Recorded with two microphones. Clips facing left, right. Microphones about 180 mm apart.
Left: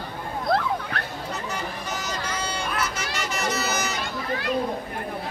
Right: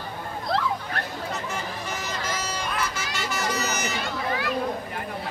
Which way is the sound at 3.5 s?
35° left (ahead or behind).